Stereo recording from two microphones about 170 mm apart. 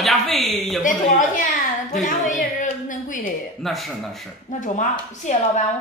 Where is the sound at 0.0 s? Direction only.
Centre (ahead or behind).